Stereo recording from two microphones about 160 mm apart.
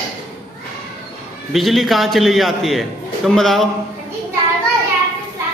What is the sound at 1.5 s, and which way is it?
A man's voice, centre (ahead or behind).